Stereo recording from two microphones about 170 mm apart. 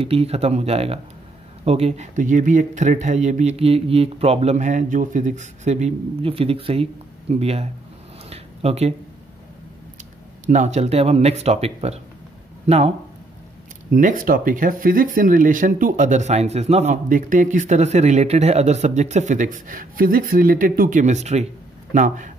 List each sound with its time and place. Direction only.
0.0 s speech: 35° right (ahead or behind)
8.3 s a sound: 35° right (ahead or behind)
10.4 s speech: 45° right (ahead or behind)
13.9 s speech: 50° right (ahead or behind)